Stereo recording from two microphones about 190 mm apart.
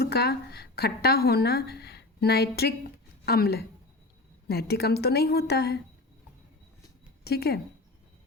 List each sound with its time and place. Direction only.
0.0 s a woman's voice: 60° left (ahead or behind)
7.3 s a woman's voice: 55° left (ahead or behind)